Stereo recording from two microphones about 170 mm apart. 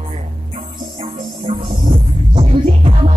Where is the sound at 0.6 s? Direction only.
30° right (ahead or behind).